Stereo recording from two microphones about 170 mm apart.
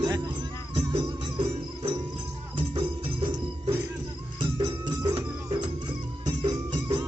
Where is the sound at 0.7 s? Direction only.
30° right (ahead or behind).